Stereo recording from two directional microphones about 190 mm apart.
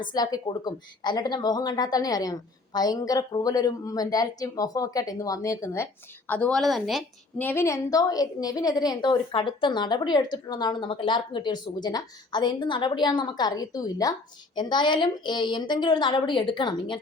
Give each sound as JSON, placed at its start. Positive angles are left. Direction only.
{"t": 0.0, "sound": "a woman's voice", "side_deg": 20}
{"t": 7.4, "sound": "a woman's voice", "side_deg": 15}